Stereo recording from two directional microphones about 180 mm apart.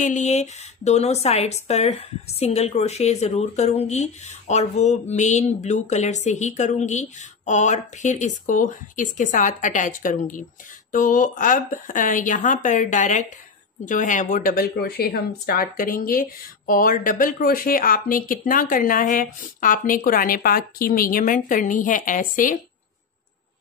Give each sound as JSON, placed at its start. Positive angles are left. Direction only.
{"t": 0.0, "sound": "speech", "side_deg": 40}